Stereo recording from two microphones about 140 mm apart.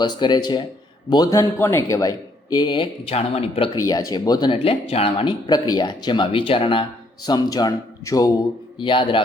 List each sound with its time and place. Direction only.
0.0 s a man's voice: 30° left (ahead or behind)
3.8 s speech: 25° left (ahead or behind); by 5.3 s 45° left (ahead or behind)
5.5 s speech: 30° left (ahead or behind)
7.3 s a man's voice: 30° left (ahead or behind)